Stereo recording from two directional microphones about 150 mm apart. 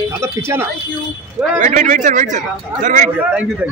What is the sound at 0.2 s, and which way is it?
Speech, 15° right (ahead or behind).